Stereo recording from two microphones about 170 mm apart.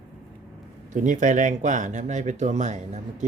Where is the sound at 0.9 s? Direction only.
50° right (ahead or behind).